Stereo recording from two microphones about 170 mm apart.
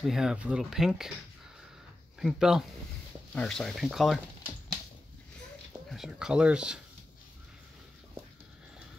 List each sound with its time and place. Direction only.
0.0 s speech: 5° right (ahead or behind)
2.1 s speech: centre (ahead or behind)
5.9 s speech: 5° right (ahead or behind)